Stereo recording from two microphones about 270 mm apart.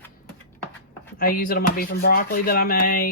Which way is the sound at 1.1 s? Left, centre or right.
Left.